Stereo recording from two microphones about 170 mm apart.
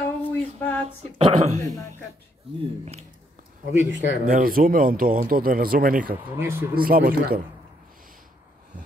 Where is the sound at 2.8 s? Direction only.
40° right (ahead or behind).